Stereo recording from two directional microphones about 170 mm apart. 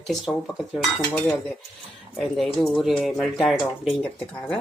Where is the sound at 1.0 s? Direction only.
10° left (ahead or behind).